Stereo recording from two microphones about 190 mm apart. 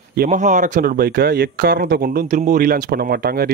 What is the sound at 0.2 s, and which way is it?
Speech, 40° right (ahead or behind).